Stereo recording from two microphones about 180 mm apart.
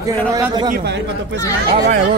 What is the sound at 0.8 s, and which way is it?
Speech, 75° right (ahead or behind).